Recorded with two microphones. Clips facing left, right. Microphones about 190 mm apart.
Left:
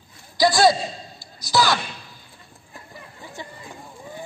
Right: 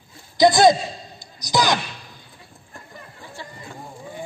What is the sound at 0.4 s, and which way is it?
Speech, 20° right (ahead or behind).